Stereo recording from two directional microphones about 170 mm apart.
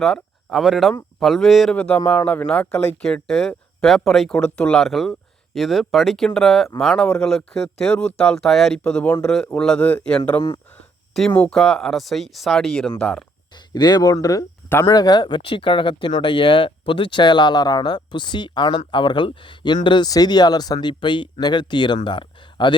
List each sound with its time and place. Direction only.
0.0 s speech: centre (ahead or behind)
13.7 s speech: 25° left (ahead or behind)